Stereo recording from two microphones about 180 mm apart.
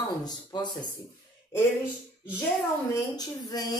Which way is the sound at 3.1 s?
20° left (ahead or behind).